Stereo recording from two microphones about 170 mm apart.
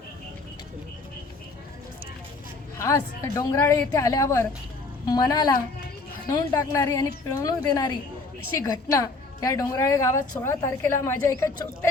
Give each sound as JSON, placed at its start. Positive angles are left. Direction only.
{"t": 2.7, "sound": "a woman's voice", "side_deg": 20}